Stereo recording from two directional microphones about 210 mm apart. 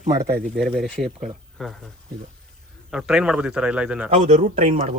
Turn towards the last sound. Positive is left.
turn(degrees=-30)  # may be behind; listen again after turning